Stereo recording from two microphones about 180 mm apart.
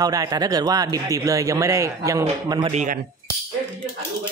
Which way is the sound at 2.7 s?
45° right (ahead or behind).